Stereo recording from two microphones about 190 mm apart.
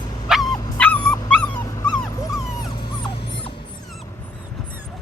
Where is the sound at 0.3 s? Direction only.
Centre (ahead or behind).